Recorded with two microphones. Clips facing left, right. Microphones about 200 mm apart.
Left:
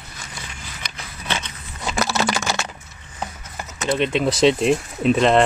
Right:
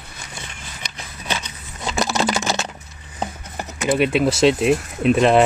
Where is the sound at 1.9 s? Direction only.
15° right (ahead or behind).